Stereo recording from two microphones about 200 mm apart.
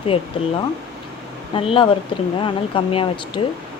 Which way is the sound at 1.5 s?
25° left (ahead or behind).